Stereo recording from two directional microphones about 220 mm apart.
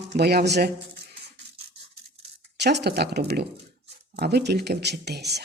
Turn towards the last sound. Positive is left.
turn(degrees=-50)  # may be behind; listen again after turning